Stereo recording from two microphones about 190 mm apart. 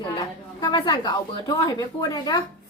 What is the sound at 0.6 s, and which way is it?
A woman's voice, 25° left (ahead or behind).